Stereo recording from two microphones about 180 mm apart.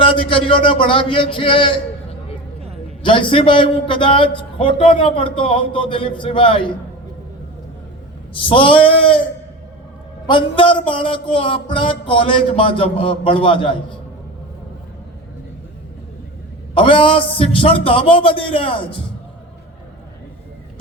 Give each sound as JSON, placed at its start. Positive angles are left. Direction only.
{"t": 0.0, "sound": "a man's voice", "side_deg": 30}
{"t": 3.0, "sound": "a man's voice", "side_deg": 30}
{"t": 8.3, "sound": "a man's voice", "side_deg": 30}
{"t": 10.2, "sound": "a man's voice", "side_deg": 30}
{"t": 16.7, "sound": "a man's voice", "side_deg": 30}